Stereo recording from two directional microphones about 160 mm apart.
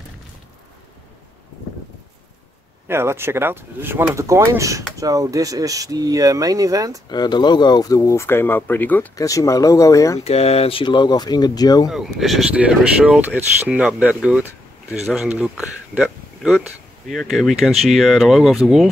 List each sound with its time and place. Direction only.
2.9 s speech: 15° right (ahead or behind)
7.1 s speech: 25° left (ahead or behind)
10.2 s speech: 40° left (ahead or behind); by 11.9 s 25° left (ahead or behind)
11.9 s speech: centre (ahead or behind)